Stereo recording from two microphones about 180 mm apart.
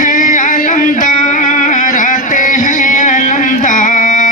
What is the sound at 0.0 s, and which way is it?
Music, 45° left (ahead or behind).